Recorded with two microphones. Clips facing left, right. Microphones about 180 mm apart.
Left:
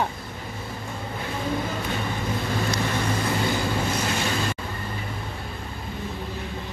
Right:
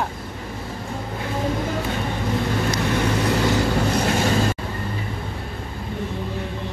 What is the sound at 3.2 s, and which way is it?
Vehicle, 75° right (ahead or behind).